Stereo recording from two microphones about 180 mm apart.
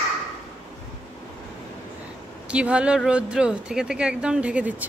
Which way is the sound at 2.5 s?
5° right (ahead or behind).